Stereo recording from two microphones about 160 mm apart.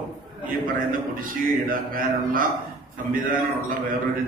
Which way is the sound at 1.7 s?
65° right (ahead or behind).